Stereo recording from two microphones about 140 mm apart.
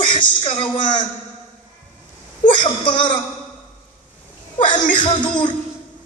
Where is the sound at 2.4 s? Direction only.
65° left (ahead or behind).